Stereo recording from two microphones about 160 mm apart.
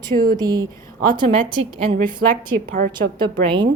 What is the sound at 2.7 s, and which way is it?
Speech, 60° right (ahead or behind).